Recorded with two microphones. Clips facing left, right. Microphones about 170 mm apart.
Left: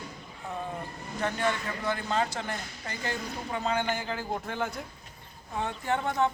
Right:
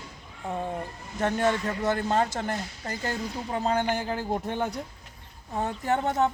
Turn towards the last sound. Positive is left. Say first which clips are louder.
# right 3 dB
turn(degrees=-40)  # may be behind; listen again after turning